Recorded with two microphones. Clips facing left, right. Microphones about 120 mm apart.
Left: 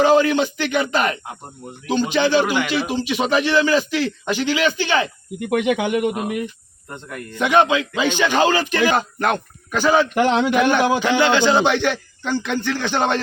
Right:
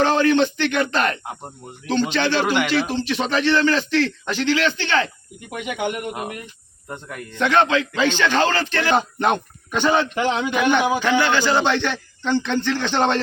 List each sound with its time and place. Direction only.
0.0 s speech: 10° left (ahead or behind)
5.4 s speech: 90° left
6.8 s speech: 10° right (ahead or behind)
7.3 s speech: 10° left (ahead or behind)
10.2 s a man's voice: 75° left (ahead or behind)
11.2 s speech: 20° left (ahead or behind)